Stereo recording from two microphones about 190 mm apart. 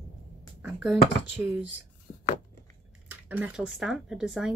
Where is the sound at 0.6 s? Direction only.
10° right (ahead or behind).